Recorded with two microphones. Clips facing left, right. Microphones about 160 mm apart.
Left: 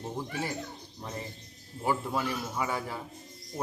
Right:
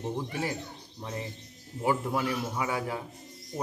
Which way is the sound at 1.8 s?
15° right (ahead or behind).